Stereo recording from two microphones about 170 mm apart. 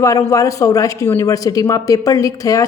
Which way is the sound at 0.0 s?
20° left (ahead or behind).